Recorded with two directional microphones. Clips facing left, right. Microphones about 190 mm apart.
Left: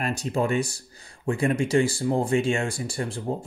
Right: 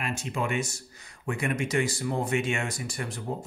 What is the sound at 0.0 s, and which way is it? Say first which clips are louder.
Speech: left 6 dB; 35° left (ahead or behind).